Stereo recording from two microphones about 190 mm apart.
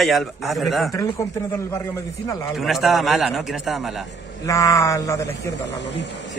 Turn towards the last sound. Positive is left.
turn(degrees=70)  # may be behind; listen again after turning